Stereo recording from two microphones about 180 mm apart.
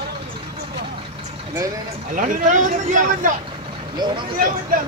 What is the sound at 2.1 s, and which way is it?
Speech, 45° right (ahead or behind).